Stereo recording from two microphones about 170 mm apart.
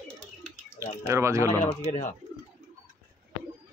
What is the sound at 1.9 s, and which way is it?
Speech, 45° left (ahead or behind).